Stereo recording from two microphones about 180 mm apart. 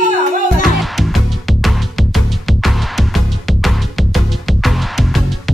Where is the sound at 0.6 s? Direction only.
Centre (ahead or behind).